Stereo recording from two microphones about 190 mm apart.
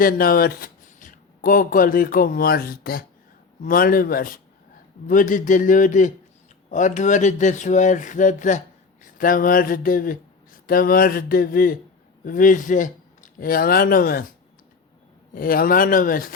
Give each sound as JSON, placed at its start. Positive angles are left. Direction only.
{"t": 0.0, "sound": "speech", "side_deg": 50}
{"t": 15.4, "sound": "speech", "side_deg": 50}